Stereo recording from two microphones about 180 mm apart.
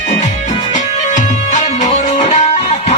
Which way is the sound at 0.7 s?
40° left (ahead or behind).